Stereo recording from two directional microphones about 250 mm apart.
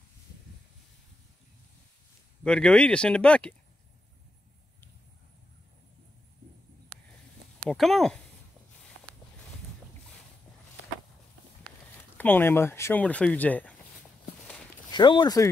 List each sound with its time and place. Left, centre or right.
2.4 s speech: centre
7.7 s speech: centre
12.2 s speech: centre
14.9 s speech: centre